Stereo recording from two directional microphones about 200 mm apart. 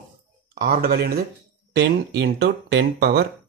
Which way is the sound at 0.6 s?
50° right (ahead or behind).